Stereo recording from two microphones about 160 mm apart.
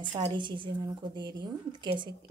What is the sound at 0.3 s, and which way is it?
A woman's voice, 30° right (ahead or behind).